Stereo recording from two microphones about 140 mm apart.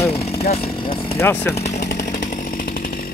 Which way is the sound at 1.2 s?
15° left (ahead or behind).